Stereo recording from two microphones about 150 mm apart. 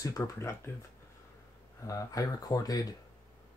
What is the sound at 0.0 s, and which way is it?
Speech, 20° left (ahead or behind).